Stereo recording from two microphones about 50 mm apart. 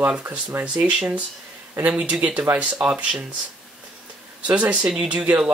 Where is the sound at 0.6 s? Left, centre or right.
Right.